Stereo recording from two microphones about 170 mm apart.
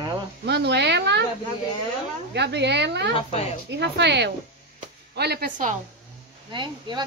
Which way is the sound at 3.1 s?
40° left (ahead or behind).